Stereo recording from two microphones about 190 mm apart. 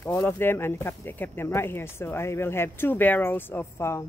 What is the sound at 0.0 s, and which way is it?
Speech, 10° left (ahead or behind).